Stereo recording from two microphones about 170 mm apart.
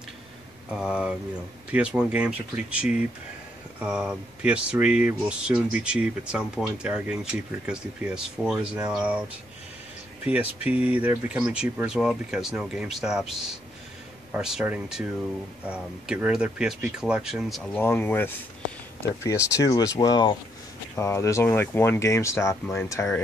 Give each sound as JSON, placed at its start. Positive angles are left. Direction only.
{"t": 0.7, "sound": "speech", "side_deg": -5}
{"t": 10.2, "sound": "speech", "side_deg": -10}
{"t": 17.8, "sound": "speech", "side_deg": 10}